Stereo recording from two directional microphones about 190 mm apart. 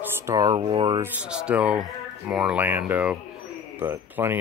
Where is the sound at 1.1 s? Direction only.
5° right (ahead or behind).